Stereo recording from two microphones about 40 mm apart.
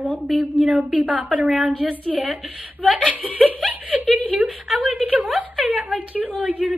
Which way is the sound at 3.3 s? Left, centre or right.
Right.